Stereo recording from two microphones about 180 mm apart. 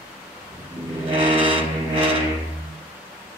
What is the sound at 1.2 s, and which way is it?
Vehicle, 30° right (ahead or behind).